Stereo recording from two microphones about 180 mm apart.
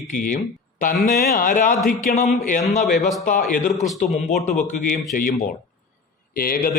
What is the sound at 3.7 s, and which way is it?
Speech, centre (ahead or behind).